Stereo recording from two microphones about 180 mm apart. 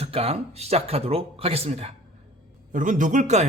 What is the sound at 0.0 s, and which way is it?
Speech, 35° right (ahead or behind).